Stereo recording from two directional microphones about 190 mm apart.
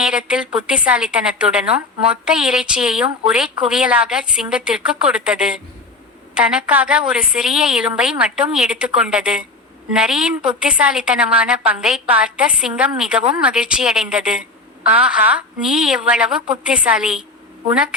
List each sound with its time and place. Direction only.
0.0 s a woman's voice: 5° right (ahead or behind)